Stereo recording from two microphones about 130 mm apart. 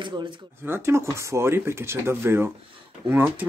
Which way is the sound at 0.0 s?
35° right (ahead or behind).